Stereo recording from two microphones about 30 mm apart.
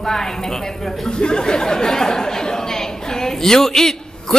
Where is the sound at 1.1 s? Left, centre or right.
Left.